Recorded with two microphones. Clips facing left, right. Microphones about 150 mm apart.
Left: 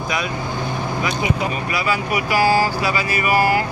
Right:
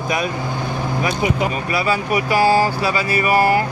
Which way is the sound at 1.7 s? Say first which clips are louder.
Right 2 dB; 30° right (ahead or behind).